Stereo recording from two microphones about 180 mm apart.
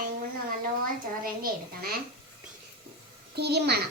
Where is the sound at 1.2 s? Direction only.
55° right (ahead or behind).